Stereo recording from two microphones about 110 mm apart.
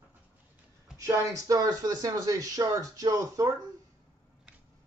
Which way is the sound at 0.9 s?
30° right (ahead or behind).